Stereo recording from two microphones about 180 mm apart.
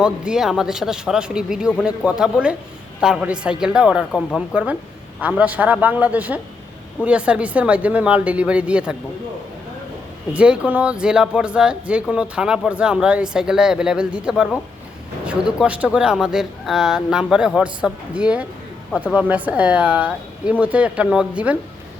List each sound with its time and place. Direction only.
0.0 s speech: 5° right (ahead or behind)
10.3 s speech: 5° right (ahead or behind)